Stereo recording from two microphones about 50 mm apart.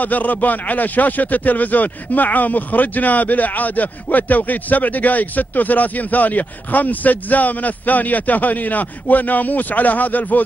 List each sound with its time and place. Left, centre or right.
0.0 s speech: left